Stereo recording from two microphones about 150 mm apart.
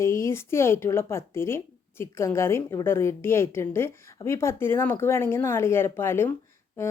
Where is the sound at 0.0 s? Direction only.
20° left (ahead or behind).